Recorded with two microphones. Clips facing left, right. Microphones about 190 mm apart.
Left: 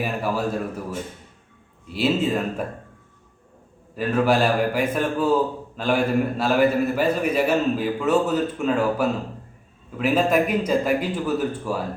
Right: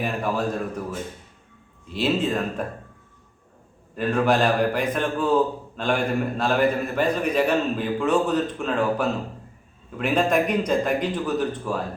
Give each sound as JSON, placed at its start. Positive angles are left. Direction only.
{"t": 0.0, "sound": "a man's voice", "side_deg": 5}
{"t": 1.9, "sound": "a man's voice", "side_deg": 5}
{"t": 3.9, "sound": "a man's voice", "side_deg": 5}